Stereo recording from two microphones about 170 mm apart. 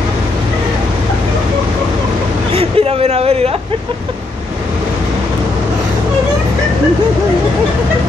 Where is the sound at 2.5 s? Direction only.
35° right (ahead or behind).